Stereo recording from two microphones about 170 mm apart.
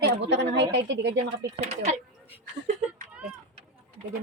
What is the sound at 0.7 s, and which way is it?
Speech, 80° right.